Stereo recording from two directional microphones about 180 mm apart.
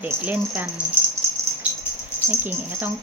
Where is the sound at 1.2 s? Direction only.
15° right (ahead or behind).